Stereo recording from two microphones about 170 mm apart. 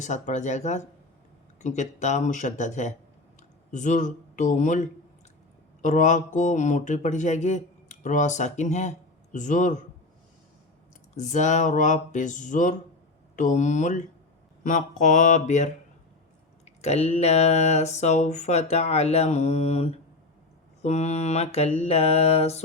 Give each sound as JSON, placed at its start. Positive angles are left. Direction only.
{"t": 0.0, "sound": "speech", "side_deg": 45}
{"t": 11.2, "sound": "speech", "side_deg": 45}
{"t": 16.6, "sound": "a sound", "side_deg": 40}